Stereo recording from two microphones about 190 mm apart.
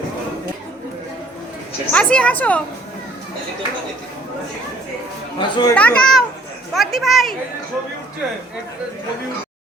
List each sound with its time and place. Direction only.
1.9 s a woman's voice: 5° left (ahead or behind)
5.4 s speech: 20° left (ahead or behind)
5.7 s a child's voice: 5° left (ahead or behind)